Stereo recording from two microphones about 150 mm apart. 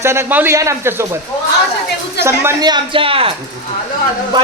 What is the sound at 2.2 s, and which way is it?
Speech, 15° right (ahead or behind).